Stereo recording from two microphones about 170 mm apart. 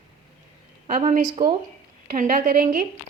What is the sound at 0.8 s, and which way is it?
Speech, 45° right (ahead or behind).